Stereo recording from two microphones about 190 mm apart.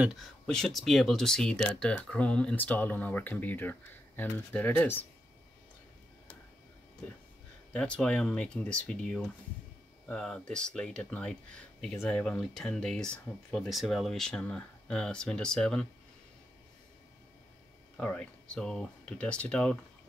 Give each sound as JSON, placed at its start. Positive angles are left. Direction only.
{"t": 0.0, "sound": "speech", "side_deg": 0}
{"t": 7.7, "sound": "speech", "side_deg": 5}
{"t": 17.9, "sound": "speech", "side_deg": 5}